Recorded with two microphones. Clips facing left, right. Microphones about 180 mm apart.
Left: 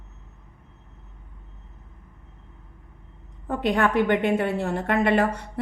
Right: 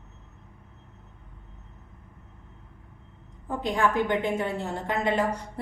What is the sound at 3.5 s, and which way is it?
Speech, 70° left (ahead or behind).